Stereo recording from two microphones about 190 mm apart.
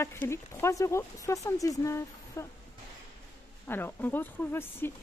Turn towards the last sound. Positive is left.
turn(degrees=10)  # may be behind; listen again after turning